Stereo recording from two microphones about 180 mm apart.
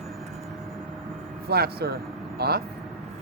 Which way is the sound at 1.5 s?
60° right (ahead or behind).